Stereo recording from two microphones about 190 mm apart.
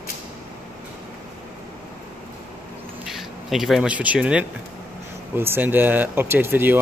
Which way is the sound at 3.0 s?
Centre (ahead or behind).